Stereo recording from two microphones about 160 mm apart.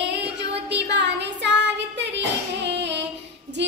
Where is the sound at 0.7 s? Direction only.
90° right.